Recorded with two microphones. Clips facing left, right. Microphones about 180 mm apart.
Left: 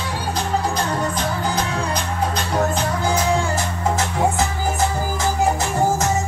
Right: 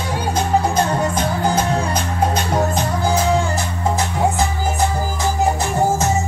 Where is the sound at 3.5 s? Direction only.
20° right (ahead or behind).